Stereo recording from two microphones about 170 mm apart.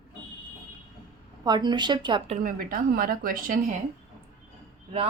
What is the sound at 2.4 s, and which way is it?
A woman's voice, 55° right (ahead or behind).